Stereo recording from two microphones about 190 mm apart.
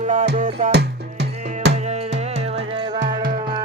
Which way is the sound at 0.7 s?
60° right (ahead or behind).